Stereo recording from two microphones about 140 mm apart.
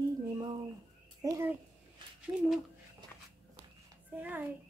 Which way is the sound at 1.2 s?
15° right (ahead or behind).